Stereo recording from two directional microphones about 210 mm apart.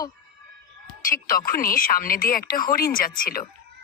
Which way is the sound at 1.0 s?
40° left (ahead or behind).